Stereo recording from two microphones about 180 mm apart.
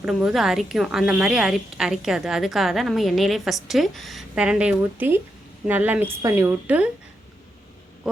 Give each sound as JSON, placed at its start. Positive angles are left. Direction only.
{"t": 0.0, "sound": "a woman's voice", "side_deg": -5}